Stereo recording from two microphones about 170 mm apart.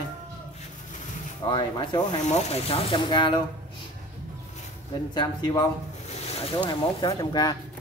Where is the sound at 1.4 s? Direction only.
25° left (ahead or behind).